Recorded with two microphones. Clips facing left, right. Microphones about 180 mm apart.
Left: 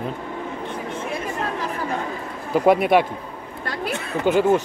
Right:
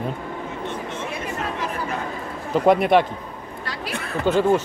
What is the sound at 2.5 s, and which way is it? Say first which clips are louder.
Speech: even; 5° left (ahead or behind).